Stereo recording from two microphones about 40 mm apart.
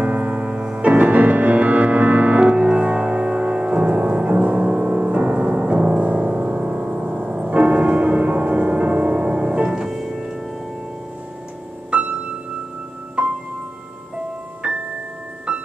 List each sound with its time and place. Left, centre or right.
0.0 s music: right
2.4 s music: right; by 10.3 s centre
14.6 s music: right